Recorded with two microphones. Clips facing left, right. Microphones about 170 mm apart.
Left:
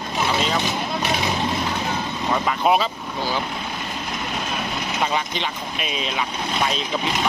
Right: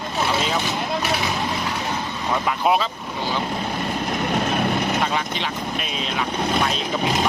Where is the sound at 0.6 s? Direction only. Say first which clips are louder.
Even; 20° left (ahead or behind).